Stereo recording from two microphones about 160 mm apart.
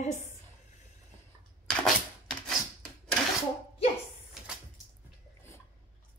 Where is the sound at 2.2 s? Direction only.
5° left (ahead or behind).